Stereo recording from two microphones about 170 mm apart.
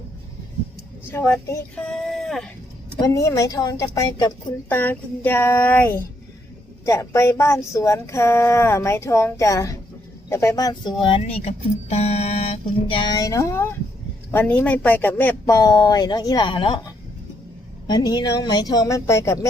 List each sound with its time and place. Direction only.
1.1 s speech: 15° left (ahead or behind)
3.0 s speech: 20° left (ahead or behind)
15.5 s speech: 25° left (ahead or behind)